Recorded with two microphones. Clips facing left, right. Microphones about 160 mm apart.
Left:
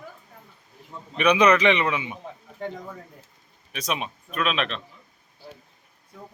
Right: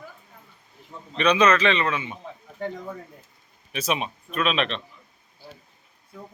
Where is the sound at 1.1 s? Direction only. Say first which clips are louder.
Left 1 dB; 15° left (ahead or behind).